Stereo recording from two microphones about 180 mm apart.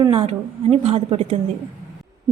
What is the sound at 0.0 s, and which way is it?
A woman's voice, 30° right (ahead or behind).